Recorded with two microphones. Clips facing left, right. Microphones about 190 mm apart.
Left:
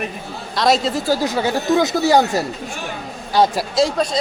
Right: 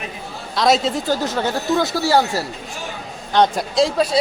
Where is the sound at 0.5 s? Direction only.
Centre (ahead or behind); by 2.4 s 20° left (ahead or behind).